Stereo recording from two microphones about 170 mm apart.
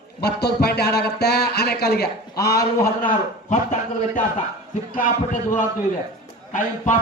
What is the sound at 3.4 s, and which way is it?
Speech, 45° left (ahead or behind).